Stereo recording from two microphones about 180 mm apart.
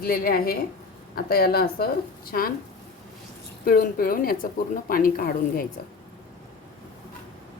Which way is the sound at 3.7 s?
55° left (ahead or behind).